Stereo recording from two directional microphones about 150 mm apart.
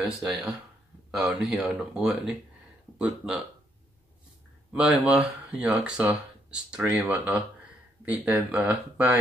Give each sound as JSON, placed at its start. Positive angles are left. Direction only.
{"t": 0.0, "sound": "speech", "side_deg": -5}
{"t": 4.7, "sound": "speech", "side_deg": -10}